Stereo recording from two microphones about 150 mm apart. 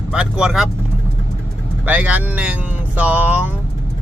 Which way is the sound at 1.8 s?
10° right (ahead or behind).